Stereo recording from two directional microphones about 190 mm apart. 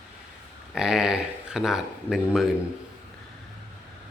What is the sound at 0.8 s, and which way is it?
Speech, 5° right (ahead or behind).